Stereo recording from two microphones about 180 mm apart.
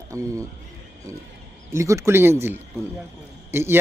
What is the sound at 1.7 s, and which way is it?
Speech, 15° right (ahead or behind).